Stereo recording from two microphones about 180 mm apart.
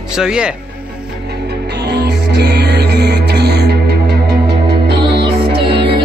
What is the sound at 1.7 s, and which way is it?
Music, 70° right (ahead or behind).